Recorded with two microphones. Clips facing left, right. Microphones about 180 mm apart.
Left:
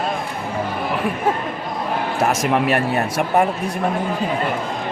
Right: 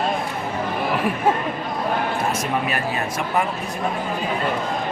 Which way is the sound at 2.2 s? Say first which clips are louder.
Left 5 dB; 90° left.